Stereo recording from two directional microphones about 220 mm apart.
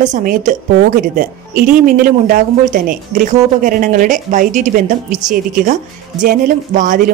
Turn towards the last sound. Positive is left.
turn(degrees=-35)  # may be behind; listen again after turning